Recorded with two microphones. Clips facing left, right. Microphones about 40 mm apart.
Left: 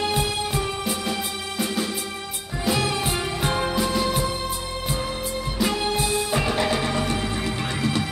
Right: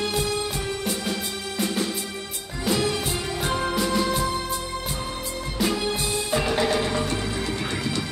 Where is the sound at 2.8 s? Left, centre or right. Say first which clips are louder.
Left 1 dB; left.